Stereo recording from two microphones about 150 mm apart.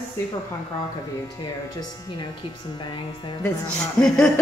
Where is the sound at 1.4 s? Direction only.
30° left (ahead or behind).